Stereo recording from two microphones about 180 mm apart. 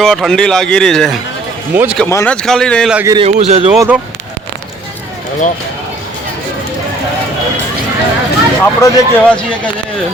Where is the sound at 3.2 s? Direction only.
35° right (ahead or behind).